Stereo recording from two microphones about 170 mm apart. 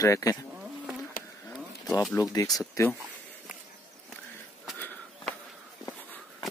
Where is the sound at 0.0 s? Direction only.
20° left (ahead or behind).